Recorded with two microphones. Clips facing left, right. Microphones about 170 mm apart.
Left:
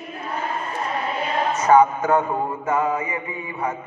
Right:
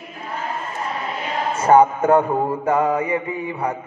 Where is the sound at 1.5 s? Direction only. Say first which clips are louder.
Right 2 dB; 30° right (ahead or behind).